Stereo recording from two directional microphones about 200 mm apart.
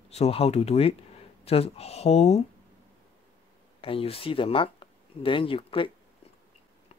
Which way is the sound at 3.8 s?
25° left (ahead or behind).